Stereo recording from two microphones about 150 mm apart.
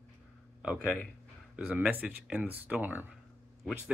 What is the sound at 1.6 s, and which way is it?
Speech, 10° right (ahead or behind).